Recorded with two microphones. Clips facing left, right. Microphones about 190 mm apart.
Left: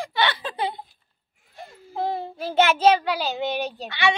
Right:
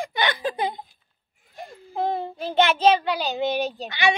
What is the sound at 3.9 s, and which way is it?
Speech, 15° right (ahead or behind).